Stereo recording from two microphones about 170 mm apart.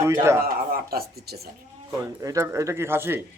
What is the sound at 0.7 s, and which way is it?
Speech, 60° right (ahead or behind).